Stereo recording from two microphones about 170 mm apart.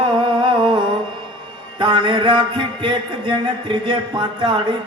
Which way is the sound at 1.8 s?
25° right (ahead or behind).